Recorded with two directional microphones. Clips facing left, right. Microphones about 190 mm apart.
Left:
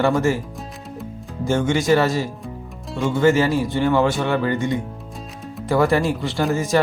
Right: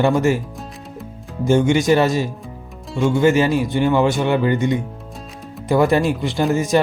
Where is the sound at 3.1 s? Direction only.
15° right (ahead or behind).